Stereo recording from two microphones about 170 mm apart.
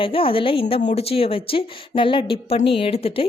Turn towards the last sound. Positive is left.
turn(degrees=35)  # may be behind; listen again after turning